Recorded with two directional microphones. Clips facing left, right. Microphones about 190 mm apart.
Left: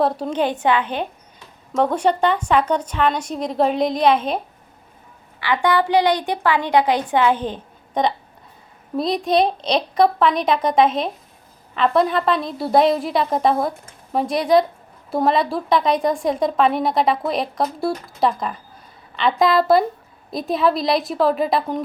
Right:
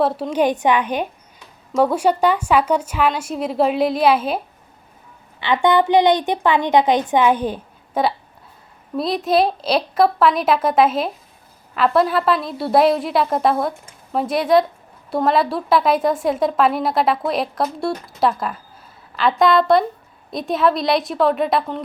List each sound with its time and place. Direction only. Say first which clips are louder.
0.0 s a woman's voice: right 2 dB; 5° right (ahead or behind)
5.4 s a woman's voice: right 3 dB; 20° right (ahead or behind); by 21.6 s centre (ahead or behind)